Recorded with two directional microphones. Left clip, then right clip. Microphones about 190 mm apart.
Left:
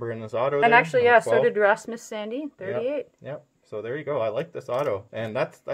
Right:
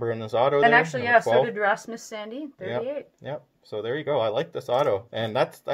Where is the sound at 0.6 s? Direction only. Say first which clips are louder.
Left 4 dB; 55° left (ahead or behind).